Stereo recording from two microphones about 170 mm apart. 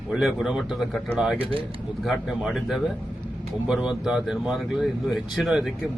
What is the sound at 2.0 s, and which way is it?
Speech, centre (ahead or behind).